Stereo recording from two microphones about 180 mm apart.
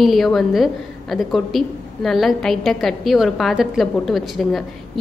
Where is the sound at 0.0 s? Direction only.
Centre (ahead or behind).